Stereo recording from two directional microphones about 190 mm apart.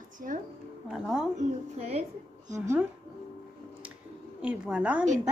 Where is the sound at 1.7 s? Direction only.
35° right (ahead or behind).